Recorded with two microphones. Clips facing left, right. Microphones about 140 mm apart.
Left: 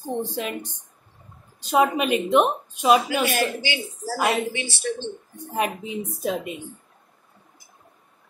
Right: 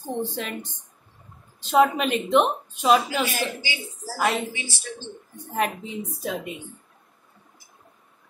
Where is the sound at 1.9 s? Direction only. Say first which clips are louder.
Left 1 dB; 10° left (ahead or behind).